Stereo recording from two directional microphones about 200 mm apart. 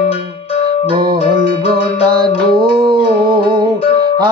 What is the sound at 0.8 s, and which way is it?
Music, 25° right (ahead or behind).